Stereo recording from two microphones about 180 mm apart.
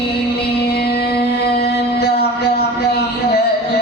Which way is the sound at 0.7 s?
60° left (ahead or behind).